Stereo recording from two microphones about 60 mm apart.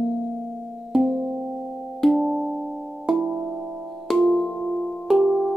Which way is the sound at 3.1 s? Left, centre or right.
Right.